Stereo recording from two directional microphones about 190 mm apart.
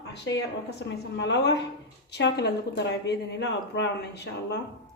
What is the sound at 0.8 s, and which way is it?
Speech, 65° left (ahead or behind).